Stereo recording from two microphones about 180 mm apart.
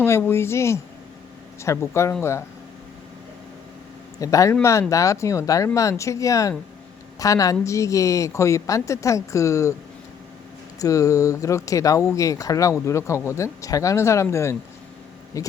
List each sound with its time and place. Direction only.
0.0 s a woman's voice: 10° left (ahead or behind)
4.2 s a woman's voice: 20° left (ahead or behind)
10.8 s a woman's voice: 20° left (ahead or behind)